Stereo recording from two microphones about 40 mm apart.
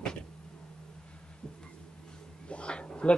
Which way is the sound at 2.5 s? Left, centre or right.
Left.